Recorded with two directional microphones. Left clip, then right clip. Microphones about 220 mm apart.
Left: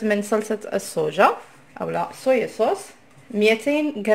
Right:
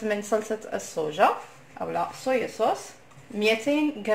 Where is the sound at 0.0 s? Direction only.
40° left (ahead or behind).